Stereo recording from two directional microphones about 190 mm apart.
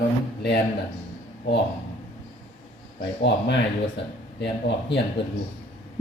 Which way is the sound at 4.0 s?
65° left (ahead or behind).